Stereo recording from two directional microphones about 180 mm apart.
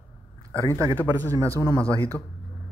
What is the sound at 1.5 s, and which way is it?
Speech, 15° left (ahead or behind).